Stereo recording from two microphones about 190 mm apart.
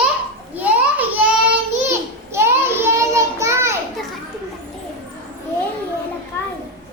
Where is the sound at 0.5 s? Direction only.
10° right (ahead or behind).